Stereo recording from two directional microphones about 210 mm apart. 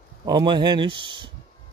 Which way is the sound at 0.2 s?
20° right (ahead or behind).